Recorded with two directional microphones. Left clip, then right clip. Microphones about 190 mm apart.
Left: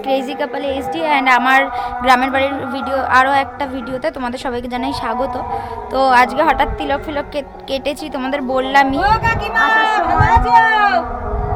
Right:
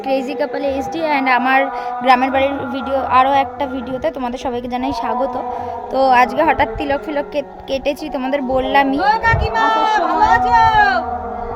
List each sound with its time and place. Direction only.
0.1 s a woman's voice: 15° right (ahead or behind)